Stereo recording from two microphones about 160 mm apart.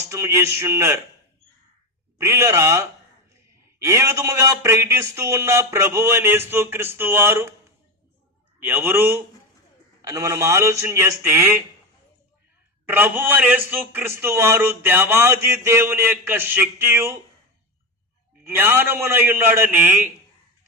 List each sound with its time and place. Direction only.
0.1 s a man's voice: 15° right (ahead or behind)
2.1 s a man's voice: 15° right (ahead or behind)
8.6 s a man's voice: 15° right (ahead or behind)
12.8 s a man's voice: 15° right (ahead or behind)
18.4 s a man's voice: 15° right (ahead or behind)